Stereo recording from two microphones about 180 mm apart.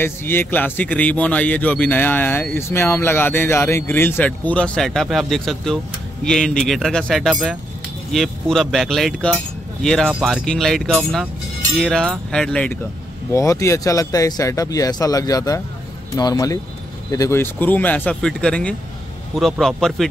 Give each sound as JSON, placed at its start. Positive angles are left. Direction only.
{"t": 0.0, "sound": "a man's voice", "side_deg": 10}
{"t": 13.3, "sound": "a man's voice", "side_deg": 15}